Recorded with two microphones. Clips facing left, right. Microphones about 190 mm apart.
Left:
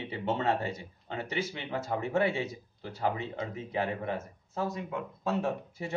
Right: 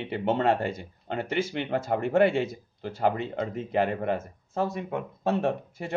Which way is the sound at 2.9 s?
60° right (ahead or behind).